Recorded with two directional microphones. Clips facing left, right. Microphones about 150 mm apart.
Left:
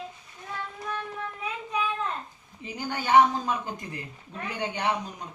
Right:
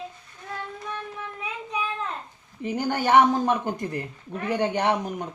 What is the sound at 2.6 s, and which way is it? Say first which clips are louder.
A woman's voice: right 7 dB; 55° right (ahead or behind).